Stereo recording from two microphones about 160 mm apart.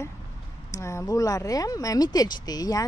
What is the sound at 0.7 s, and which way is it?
Speech, 20° left (ahead or behind).